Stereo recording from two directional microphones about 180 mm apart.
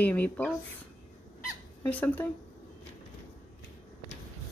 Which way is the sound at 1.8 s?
10° left (ahead or behind).